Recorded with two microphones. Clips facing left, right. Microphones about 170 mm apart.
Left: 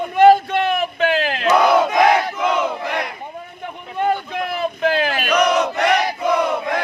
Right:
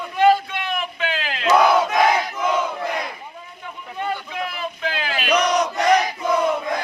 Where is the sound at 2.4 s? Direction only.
75° left (ahead or behind).